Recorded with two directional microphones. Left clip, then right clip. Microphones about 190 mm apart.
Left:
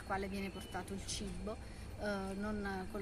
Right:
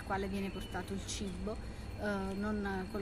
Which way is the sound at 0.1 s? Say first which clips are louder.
Right 3 dB; 10° left (ahead or behind).